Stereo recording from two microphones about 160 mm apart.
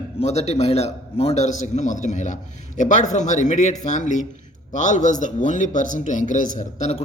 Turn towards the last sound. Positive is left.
turn(degrees=45)  # may be behind; listen again after turning